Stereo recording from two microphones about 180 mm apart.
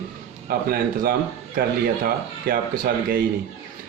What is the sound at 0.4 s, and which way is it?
Speech, 55° right (ahead or behind).